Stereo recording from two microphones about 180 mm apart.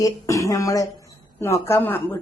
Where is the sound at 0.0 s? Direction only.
20° left (ahead or behind).